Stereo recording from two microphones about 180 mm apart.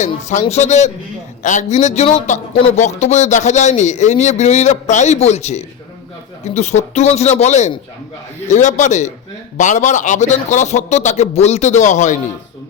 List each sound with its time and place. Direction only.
0.0 s speech: 40° left (ahead or behind)